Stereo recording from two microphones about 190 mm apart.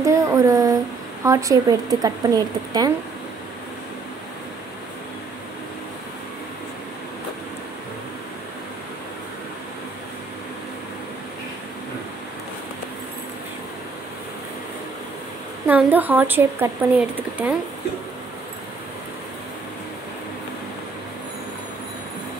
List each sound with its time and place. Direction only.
0.0 s a sound: 15° right (ahead or behind)
1.2 s a woman's voice: 15° right (ahead or behind)
15.6 s speech: 10° right (ahead or behind)